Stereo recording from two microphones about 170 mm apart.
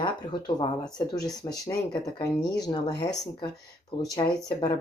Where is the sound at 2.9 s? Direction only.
80° left.